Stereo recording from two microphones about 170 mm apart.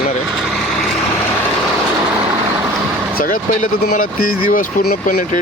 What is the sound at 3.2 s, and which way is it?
Speech, 55° left (ahead or behind).